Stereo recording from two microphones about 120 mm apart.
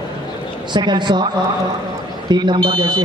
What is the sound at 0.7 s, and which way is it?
Speech, 40° right (ahead or behind).